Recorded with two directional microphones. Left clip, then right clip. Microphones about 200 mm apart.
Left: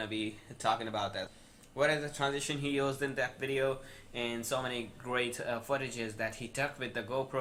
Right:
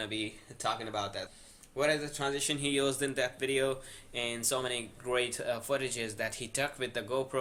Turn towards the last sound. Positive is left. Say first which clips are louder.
# right 2 dB
turn(degrees=-25)  # may be behind; listen again after turning